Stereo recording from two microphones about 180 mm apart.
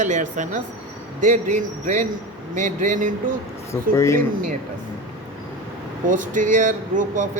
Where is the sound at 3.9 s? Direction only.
15° left (ahead or behind).